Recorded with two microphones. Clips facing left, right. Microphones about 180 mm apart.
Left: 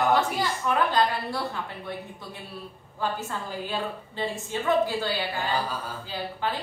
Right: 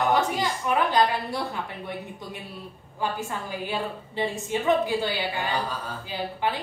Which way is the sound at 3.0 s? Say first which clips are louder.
Right 1 dB; 15° right (ahead or behind).